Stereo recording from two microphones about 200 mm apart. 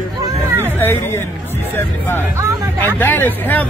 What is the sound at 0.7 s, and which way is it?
Speech, 10° left (ahead or behind).